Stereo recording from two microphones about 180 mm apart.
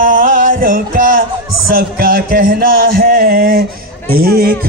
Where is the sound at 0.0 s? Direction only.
45° right (ahead or behind).